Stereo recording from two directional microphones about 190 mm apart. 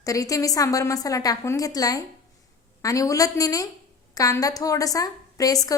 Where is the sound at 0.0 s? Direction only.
20° left (ahead or behind).